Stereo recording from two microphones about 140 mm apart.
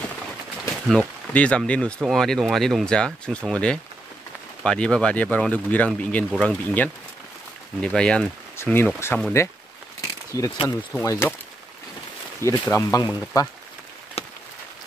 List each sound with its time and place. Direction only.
0.8 s speech: 10° left (ahead or behind)
12.4 s speech: 20° left (ahead or behind)
14.2 s a sound: 45° left (ahead or behind)